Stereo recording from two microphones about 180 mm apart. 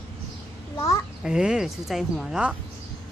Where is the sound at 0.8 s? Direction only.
15° left (ahead or behind).